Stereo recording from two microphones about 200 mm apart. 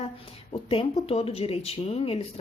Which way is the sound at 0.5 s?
25° left (ahead or behind).